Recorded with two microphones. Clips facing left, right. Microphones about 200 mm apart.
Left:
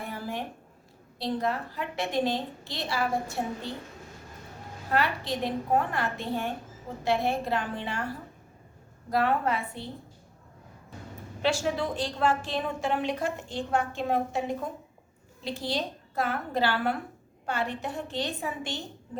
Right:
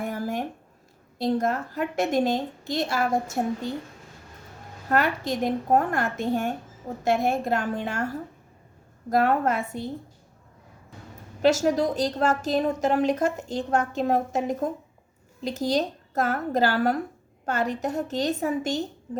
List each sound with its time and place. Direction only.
0.0 s a sound: 45° right (ahead or behind)
1.2 s a woman's voice: 45° right (ahead or behind)
4.9 s a woman's voice: 45° right (ahead or behind)
11.4 s a woman's voice: 40° right (ahead or behind)